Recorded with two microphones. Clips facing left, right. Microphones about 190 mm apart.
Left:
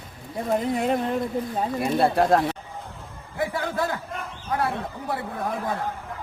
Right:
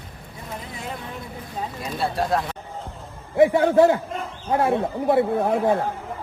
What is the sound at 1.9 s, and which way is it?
Speech, 55° left (ahead or behind).